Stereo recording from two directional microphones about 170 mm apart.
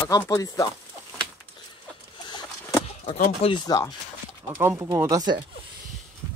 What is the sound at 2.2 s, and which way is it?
Chicken, 25° left (ahead or behind).